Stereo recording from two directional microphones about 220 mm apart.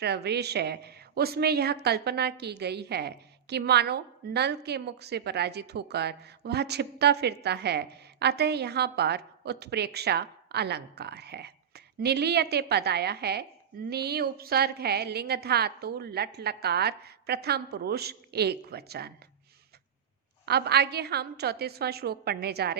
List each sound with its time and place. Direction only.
0.0 s a woman's voice: 50° right (ahead or behind)
20.4 s a woman's voice: 45° right (ahead or behind)